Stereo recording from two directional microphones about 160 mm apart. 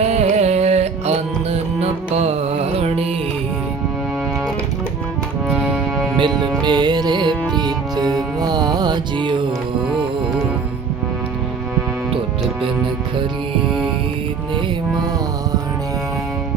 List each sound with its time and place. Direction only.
0.0 s music: 45° right (ahead or behind)
5.5 s music: 5° right (ahead or behind)
6.1 s speech: 30° right (ahead or behind)
6.7 s music: 30° right (ahead or behind)